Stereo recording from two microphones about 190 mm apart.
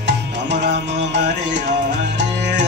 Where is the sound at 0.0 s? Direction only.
65° right (ahead or behind).